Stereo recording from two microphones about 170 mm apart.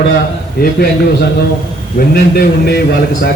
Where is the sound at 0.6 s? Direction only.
70° left (ahead or behind).